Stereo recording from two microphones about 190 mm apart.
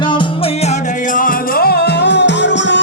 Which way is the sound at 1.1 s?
50° left (ahead or behind).